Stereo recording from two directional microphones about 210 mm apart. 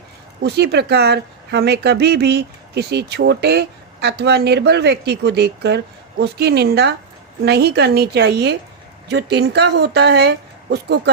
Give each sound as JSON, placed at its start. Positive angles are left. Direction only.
{"t": 0.4, "sound": "speech", "side_deg": -50}